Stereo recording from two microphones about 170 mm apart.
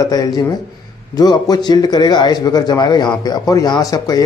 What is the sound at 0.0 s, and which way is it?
A man's voice, 20° left (ahead or behind).